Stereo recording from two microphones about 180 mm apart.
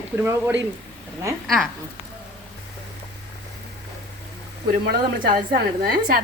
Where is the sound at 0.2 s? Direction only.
15° right (ahead or behind).